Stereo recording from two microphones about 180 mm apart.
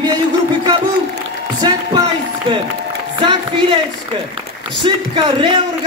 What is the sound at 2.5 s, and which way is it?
Speech, 30° right (ahead or behind).